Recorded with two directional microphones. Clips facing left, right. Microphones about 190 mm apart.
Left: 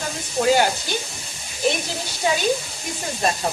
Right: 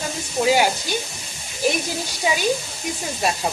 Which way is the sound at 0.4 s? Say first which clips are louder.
Even; 10° right (ahead or behind).